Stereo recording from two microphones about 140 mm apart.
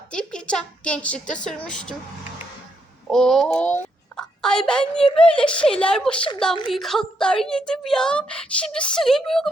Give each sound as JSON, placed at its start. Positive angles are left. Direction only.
{"t": 0.1, "sound": "speech", "side_deg": 5}
{"t": 3.1, "sound": "a woman's voice", "side_deg": 5}
{"t": 4.2, "sound": "a sound", "side_deg": 5}
{"t": 5.1, "sound": "a woman's voice", "side_deg": 5}
{"t": 6.1, "sound": "a woman's voice", "side_deg": 35}
{"t": 6.7, "sound": "a woman's voice", "side_deg": 0}